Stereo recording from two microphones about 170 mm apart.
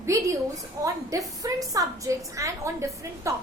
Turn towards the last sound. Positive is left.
turn(degrees=-15)  # may be behind; listen again after turning